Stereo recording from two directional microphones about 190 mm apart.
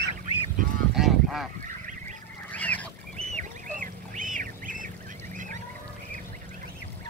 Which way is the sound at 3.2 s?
35° right (ahead or behind).